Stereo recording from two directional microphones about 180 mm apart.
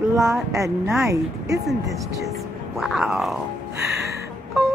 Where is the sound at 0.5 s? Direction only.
15° right (ahead or behind).